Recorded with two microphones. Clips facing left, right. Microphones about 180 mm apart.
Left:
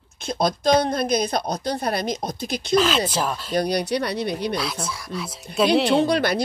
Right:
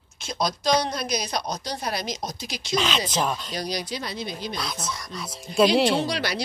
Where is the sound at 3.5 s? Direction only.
60° left (ahead or behind).